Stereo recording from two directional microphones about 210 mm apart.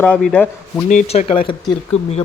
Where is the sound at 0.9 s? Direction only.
30° left (ahead or behind).